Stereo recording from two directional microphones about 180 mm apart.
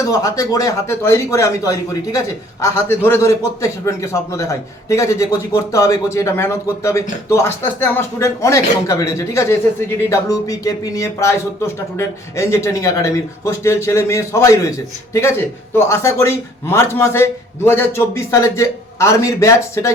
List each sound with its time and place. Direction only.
0.1 s speech: 20° left (ahead or behind)